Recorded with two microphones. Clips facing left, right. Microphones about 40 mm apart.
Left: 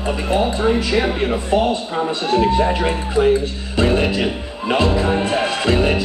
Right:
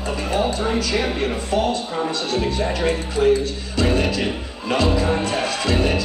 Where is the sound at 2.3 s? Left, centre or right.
Left.